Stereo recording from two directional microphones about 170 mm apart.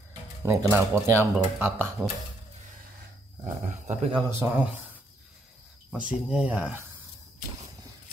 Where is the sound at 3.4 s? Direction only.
45° right (ahead or behind).